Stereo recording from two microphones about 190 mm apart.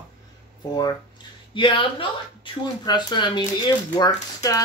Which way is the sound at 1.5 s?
25° left (ahead or behind).